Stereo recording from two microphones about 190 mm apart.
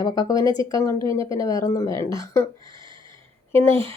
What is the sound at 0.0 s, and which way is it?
Speech, 20° left (ahead or behind).